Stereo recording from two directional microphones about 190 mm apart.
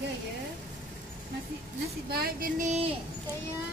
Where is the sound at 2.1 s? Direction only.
55° right (ahead or behind).